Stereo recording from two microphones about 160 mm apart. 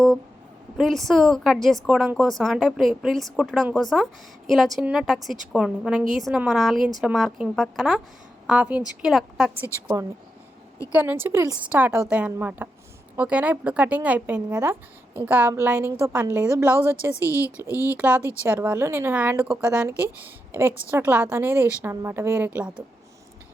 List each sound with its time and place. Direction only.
0.8 s a woman's voice: centre (ahead or behind)
10.9 s speech: 10° right (ahead or behind)
17.2 s a woman's voice: 20° left (ahead or behind)
17.9 s a woman's voice: 10° right (ahead or behind)